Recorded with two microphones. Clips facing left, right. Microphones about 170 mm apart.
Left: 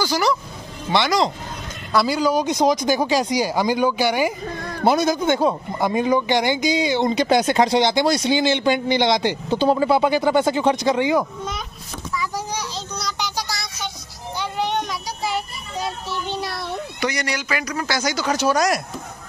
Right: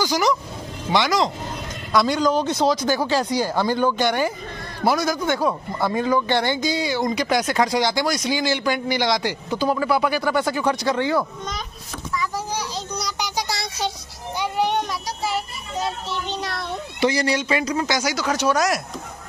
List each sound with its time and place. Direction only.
0.0 s speech: 15° right (ahead or behind)
1.9 s speech: 5° left (ahead or behind)
4.8 s speech: 20° left (ahead or behind)
12.5 s a sound: 15° right (ahead or behind)
13.5 s child singing: 30° right (ahead or behind)
14.4 s child singing: 10° right (ahead or behind)
16.1 s speech: 10° left (ahead or behind)
17.0 s speech: 30° right (ahead or behind)
18.0 s speech: centre (ahead or behind)